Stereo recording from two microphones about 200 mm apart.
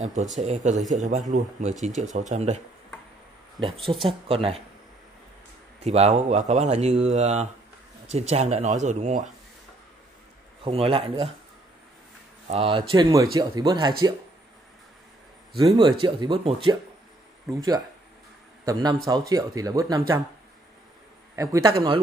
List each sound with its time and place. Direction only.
0.0 s speech: 35° right (ahead or behind)
3.6 s speech: 25° right (ahead or behind)
5.8 s speech: 30° right (ahead or behind)
10.6 s speech: 30° right (ahead or behind)
12.6 s speech: 25° right (ahead or behind)
15.7 s speech: 20° right (ahead or behind)
18.7 s speech: 20° right (ahead or behind)
21.4 s speech: 20° right (ahead or behind)